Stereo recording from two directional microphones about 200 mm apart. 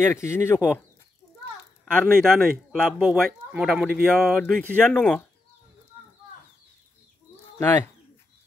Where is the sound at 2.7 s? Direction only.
5° right (ahead or behind).